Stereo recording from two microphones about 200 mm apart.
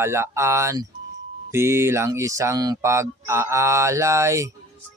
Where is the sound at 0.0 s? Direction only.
15° right (ahead or behind).